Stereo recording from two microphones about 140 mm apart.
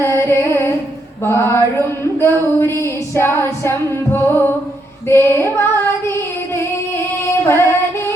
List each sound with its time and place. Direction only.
0.0 s a sound: 20° left (ahead or behind)
1.2 s female singing: 15° left (ahead or behind)
7.4 s music: 15° left (ahead or behind)